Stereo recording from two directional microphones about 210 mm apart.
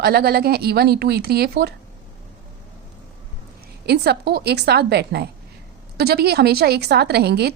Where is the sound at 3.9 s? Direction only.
50° right (ahead or behind).